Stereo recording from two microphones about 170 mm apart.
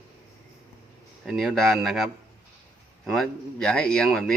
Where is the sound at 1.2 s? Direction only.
Centre (ahead or behind).